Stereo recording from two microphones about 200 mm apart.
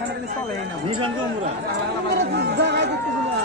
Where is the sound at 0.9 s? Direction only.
25° right (ahead or behind).